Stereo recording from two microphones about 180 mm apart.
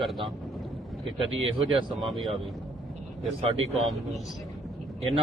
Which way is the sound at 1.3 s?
90° right.